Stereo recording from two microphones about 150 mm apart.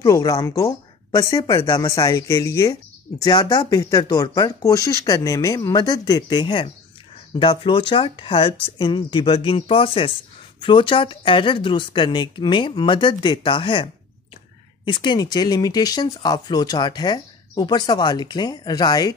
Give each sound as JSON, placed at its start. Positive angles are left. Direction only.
{"t": 0.0, "sound": "a woman's voice", "side_deg": 25}
{"t": 14.9, "sound": "speech", "side_deg": 30}